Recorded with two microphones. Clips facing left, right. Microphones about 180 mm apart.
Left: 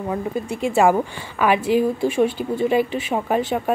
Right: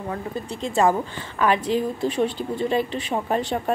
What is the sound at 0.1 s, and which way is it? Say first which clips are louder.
A woman's voice: left 6 dB; 10° left (ahead or behind).